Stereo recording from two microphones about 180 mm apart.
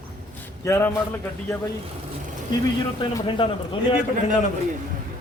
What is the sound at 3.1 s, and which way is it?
Speech, 30° left (ahead or behind).